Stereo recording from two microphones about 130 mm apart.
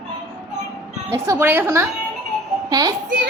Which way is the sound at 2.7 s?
30° right (ahead or behind).